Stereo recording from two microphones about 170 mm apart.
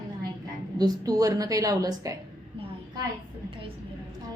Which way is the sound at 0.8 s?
20° right (ahead or behind).